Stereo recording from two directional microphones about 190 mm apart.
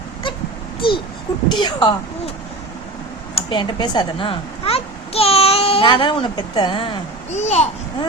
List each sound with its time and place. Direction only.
0.8 s speech: 25° left (ahead or behind)
3.3 s speech: 25° left (ahead or behind)